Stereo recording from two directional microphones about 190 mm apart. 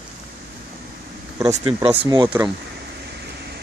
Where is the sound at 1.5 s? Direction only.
30° right (ahead or behind).